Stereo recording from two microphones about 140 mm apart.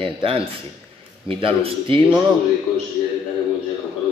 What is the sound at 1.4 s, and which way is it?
Speech, 40° right (ahead or behind).